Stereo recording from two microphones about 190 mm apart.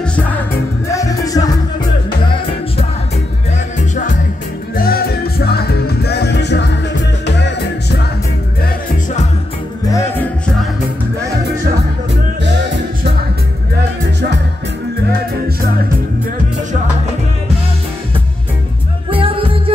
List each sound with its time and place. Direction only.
0.0 s music: 5° left (ahead or behind)
0.9 s music: 15° left (ahead or behind)
4.7 s music: 50° left (ahead or behind)
9.8 s music: 15° left (ahead or behind)
12.4 s music: 65° right (ahead or behind)
19.0 s music: 30° right (ahead or behind)